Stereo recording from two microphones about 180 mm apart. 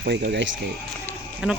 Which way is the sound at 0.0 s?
65° right (ahead or behind).